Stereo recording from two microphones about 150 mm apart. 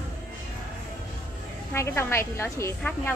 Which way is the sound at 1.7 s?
15° left (ahead or behind).